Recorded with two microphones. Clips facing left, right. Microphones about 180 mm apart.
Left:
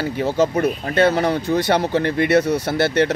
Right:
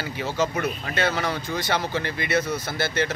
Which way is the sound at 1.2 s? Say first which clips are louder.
Left 9 dB; 55° left (ahead or behind).